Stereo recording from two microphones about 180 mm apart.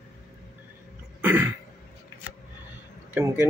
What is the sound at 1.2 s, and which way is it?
Throat clearing, 10° right (ahead or behind).